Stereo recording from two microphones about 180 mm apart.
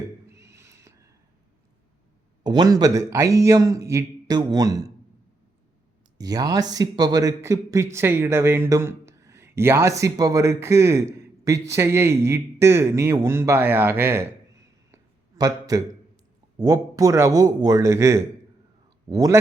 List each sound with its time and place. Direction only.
0.3 s owl: 15° right (ahead or behind)
2.4 s a man's voice: 25° right (ahead or behind)
6.1 s speech: 20° right (ahead or behind)
14.9 s a sound: 20° right (ahead or behind)
16.6 s a man's voice: 20° right (ahead or behind)